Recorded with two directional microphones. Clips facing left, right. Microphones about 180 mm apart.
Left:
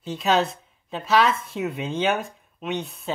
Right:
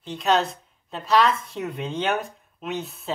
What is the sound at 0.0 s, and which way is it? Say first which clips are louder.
A woman's voice: even; centre (ahead or behind).